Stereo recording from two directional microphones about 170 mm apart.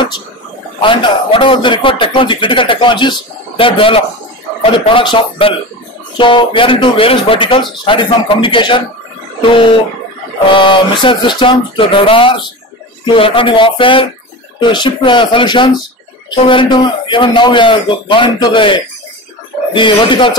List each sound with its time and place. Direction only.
0.8 s speech: 30° left (ahead or behind)
10.5 s speech: 30° left (ahead or behind)